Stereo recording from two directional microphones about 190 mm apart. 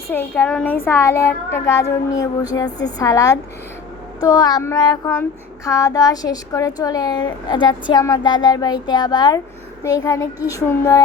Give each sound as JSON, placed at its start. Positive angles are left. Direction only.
{"t": 0.1, "sound": "a child's voice", "side_deg": 10}